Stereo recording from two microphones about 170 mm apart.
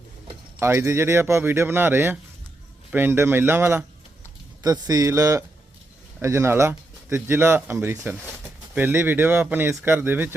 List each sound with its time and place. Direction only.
0.6 s speech: 15° right (ahead or behind)